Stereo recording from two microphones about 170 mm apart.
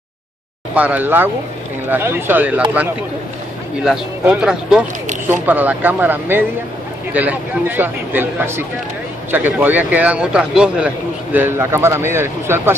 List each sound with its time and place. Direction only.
0.7 s speech: 10° right (ahead or behind)
3.8 s speech: 5° right (ahead or behind)